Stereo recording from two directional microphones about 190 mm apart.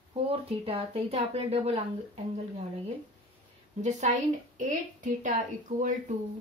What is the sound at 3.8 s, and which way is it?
A woman's voice, 40° right (ahead or behind).